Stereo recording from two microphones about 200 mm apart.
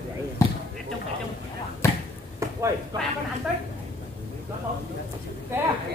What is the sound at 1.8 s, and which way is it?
Basketball bounce, 15° left (ahead or behind).